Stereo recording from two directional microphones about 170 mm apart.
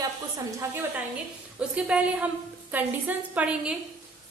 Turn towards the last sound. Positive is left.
turn(degrees=-5)  # may be behind; listen again after turning